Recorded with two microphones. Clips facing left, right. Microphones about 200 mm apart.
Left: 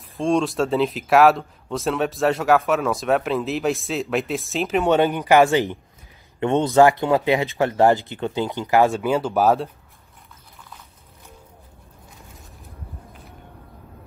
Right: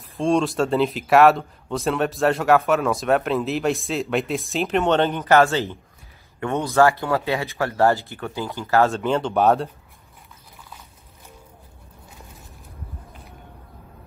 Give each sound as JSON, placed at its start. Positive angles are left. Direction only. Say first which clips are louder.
{"t": 0.2, "sound": "speech", "louder": "even", "side_deg": 0}
{"t": 4.8, "sound": "speech", "louder": "left 4 dB", "side_deg": 10}